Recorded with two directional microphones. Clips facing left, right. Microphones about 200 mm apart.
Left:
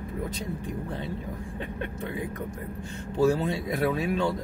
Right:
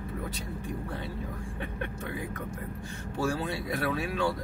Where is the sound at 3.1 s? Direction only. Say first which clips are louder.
Left 7 dB; 20° left (ahead or behind).